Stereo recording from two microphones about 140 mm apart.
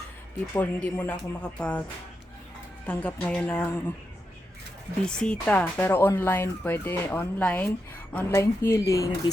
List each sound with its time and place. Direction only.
0.5 s speech: 15° left (ahead or behind)
2.8 s speech: 10° left (ahead or behind)
5.0 s speech: 5° left (ahead or behind); by 9.3 s 25° left (ahead or behind)